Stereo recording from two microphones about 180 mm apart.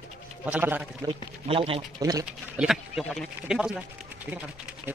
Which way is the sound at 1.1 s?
30° right (ahead or behind).